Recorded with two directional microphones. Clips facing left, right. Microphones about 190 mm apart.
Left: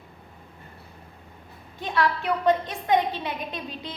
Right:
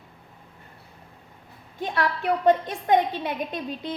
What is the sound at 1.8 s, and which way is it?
A woman's voice, 50° right (ahead or behind).